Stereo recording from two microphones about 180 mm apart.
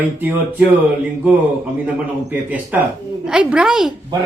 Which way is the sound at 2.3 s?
10° right (ahead or behind).